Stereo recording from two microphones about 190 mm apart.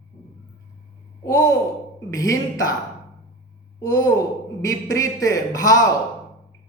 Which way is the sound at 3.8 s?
20° left (ahead or behind).